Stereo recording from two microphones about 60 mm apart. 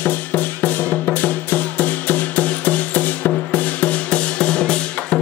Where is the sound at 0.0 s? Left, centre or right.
Left.